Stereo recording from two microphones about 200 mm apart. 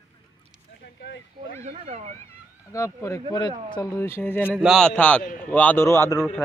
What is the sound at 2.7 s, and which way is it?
A man's voice, 15° left (ahead or behind).